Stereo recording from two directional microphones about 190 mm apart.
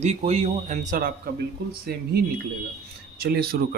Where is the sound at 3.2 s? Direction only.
55° right (ahead or behind).